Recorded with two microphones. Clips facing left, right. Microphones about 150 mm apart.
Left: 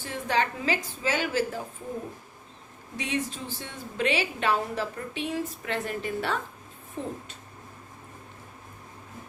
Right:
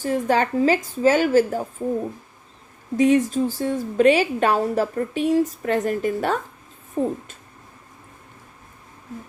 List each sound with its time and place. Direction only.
0.0 s a woman's voice: 45° right (ahead or behind)
3.0 s a woman's voice: 45° right (ahead or behind)